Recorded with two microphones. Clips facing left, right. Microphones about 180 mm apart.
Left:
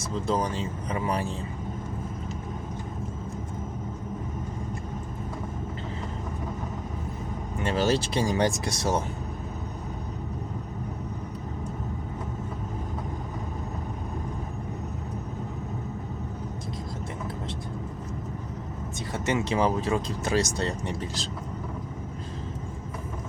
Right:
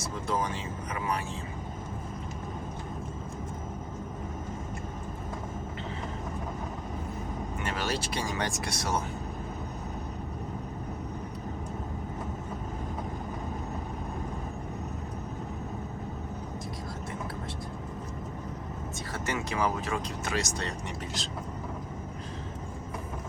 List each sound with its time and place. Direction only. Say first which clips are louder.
0.3 s speech: left 4 dB; 30° left (ahead or behind)
7.6 s speech: left 9 dB; 30° left (ahead or behind)
19.1 s speech: left 6 dB; 25° left (ahead or behind)